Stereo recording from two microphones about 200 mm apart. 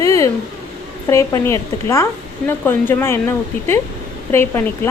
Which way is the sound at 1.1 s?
15° left (ahead or behind).